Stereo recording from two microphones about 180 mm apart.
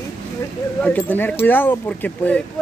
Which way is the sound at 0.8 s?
10° left (ahead or behind).